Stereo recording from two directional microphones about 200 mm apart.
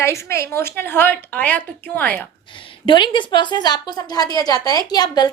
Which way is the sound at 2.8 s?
25° left (ahead or behind).